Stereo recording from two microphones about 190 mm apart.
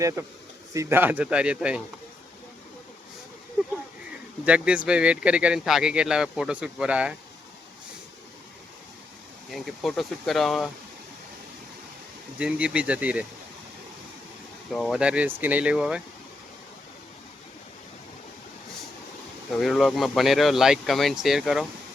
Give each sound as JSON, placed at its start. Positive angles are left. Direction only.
{"t": 0.2, "sound": "speech", "side_deg": -15}
{"t": 4.4, "sound": "speech", "side_deg": -5}
{"t": 9.5, "sound": "speech", "side_deg": 0}
{"t": 12.4, "sound": "speech", "side_deg": -5}
{"t": 14.7, "sound": "speech", "side_deg": 0}
{"t": 19.6, "sound": "speech", "side_deg": 0}